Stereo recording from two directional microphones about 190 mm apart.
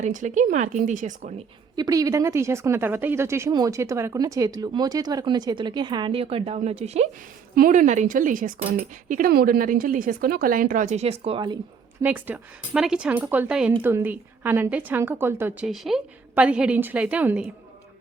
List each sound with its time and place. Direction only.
0.0 s speech: 40° right (ahead or behind)
1.7 s speech: 20° right (ahead or behind); by 7.1 s 35° right (ahead or behind)
7.5 s speech: 45° right (ahead or behind); by 11.5 s 30° right (ahead or behind)
12.0 s speech: 10° right (ahead or behind)
15.6 s a woman's voice: centre (ahead or behind)